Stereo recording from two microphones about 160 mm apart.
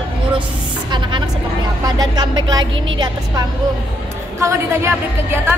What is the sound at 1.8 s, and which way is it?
A woman's voice, 25° right (ahead or behind).